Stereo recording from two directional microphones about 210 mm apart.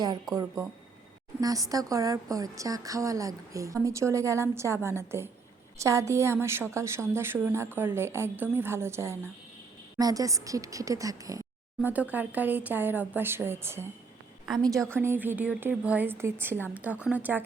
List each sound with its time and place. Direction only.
0.3 s speech: centre (ahead or behind)
1.4 s a woman's voice: 15° right (ahead or behind)